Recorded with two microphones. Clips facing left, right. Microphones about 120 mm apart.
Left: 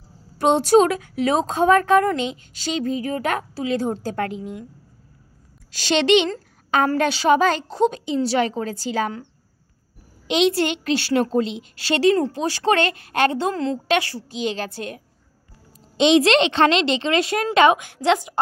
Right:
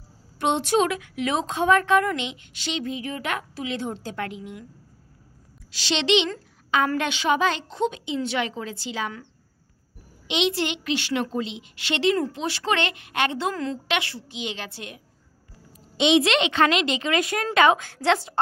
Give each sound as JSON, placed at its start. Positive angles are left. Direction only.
{"t": 0.4, "sound": "a woman's voice", "side_deg": 40}
{"t": 5.7, "sound": "a woman's voice", "side_deg": 45}
{"t": 10.2, "sound": "a woman's voice", "side_deg": 40}
{"t": 16.0, "sound": "a woman's voice", "side_deg": 40}